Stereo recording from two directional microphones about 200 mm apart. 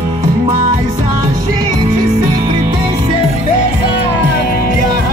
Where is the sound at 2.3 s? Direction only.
20° right (ahead or behind).